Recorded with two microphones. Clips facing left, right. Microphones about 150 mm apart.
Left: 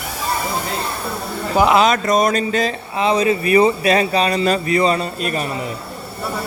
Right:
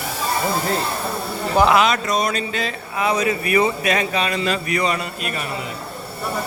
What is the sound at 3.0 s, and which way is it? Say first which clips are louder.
A man's voice: left 4 dB; 25° left (ahead or behind).